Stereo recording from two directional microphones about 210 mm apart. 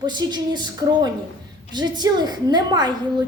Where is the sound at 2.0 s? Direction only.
20° right (ahead or behind).